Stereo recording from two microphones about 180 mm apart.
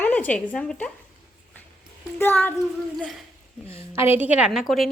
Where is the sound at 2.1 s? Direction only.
10° left (ahead or behind).